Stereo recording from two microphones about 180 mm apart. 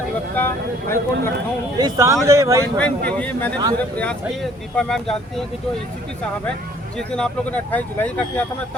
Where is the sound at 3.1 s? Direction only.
5° left (ahead or behind).